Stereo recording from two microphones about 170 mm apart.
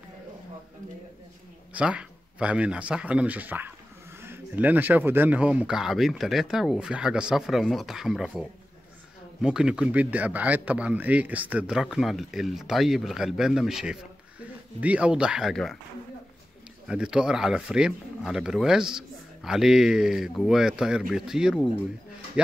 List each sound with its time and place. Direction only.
1.7 s a man's voice: 5° right (ahead or behind)
16.8 s a man's voice: 5° right (ahead or behind)